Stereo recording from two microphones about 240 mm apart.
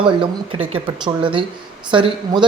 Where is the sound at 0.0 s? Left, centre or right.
Right.